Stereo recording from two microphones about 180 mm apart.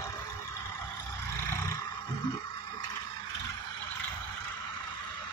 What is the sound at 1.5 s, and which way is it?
Roar, 15° left (ahead or behind).